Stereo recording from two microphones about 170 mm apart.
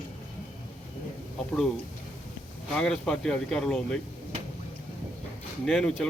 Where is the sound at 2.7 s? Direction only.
5° left (ahead or behind).